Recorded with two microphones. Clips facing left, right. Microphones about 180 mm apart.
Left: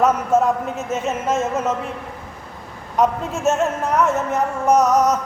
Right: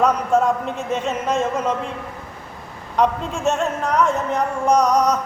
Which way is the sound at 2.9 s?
5° left (ahead or behind).